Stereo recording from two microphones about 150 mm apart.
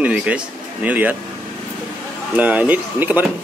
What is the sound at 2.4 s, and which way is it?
Speech, 10° right (ahead or behind).